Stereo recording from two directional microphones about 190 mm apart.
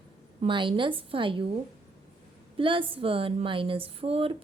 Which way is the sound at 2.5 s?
25° right (ahead or behind).